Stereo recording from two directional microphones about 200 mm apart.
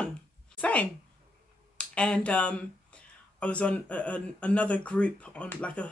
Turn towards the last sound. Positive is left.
turn(degrees=5)  # may be behind; listen again after turning